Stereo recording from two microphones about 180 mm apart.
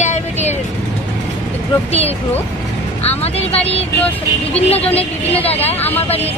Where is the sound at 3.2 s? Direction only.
35° left (ahead or behind).